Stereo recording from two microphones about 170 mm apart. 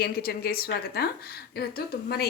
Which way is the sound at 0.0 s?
60° left (ahead or behind).